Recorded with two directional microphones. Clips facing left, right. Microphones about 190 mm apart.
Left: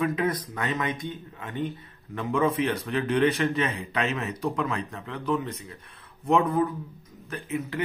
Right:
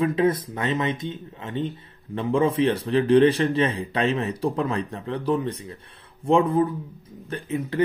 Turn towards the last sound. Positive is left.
turn(degrees=-30)  # may be behind; listen again after turning